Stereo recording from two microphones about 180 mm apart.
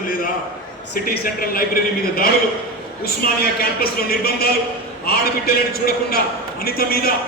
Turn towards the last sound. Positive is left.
turn(degrees=60)  # may be behind; listen again after turning